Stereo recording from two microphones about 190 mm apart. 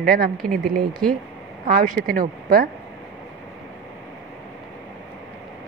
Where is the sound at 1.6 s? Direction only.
45° right (ahead or behind).